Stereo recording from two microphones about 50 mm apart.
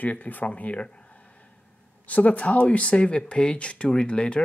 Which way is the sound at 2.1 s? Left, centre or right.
Left.